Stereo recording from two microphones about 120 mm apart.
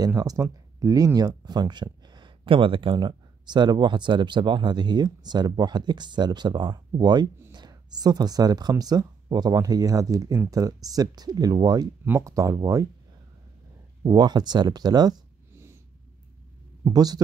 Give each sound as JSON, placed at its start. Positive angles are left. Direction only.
{"t": 0.0, "sound": "speech", "side_deg": -30}
{"t": 12.0, "sound": "speech", "side_deg": -25}
{"t": 14.0, "sound": "speech", "side_deg": -35}
{"t": 15.5, "sound": "cat", "side_deg": -20}
{"t": 16.8, "sound": "speech", "side_deg": -35}